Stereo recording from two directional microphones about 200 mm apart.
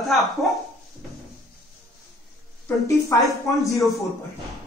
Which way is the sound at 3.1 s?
15° left (ahead or behind).